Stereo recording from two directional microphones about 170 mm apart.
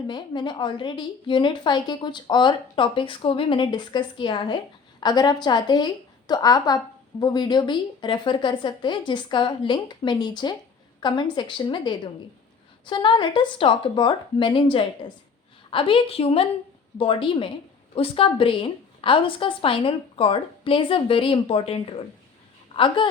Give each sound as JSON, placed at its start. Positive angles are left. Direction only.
{"t": 0.1, "sound": "a woman's voice", "side_deg": 25}